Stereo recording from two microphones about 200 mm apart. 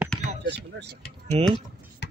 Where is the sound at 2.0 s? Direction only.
60° left (ahead or behind).